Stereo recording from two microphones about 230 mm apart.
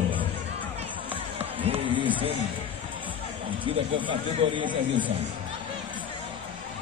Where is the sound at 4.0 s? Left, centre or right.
Right.